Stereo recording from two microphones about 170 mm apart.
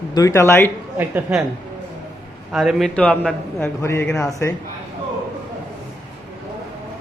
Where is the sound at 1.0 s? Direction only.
10° right (ahead or behind).